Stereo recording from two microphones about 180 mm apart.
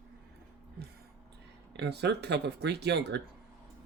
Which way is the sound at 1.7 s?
65° right (ahead or behind).